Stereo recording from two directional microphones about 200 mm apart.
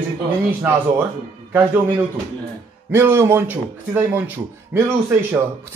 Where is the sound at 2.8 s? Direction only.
10° right (ahead or behind).